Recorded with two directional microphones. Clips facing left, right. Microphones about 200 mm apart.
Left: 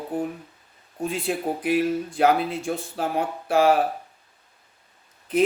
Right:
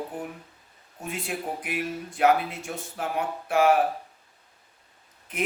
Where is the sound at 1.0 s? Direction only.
30° left (ahead or behind).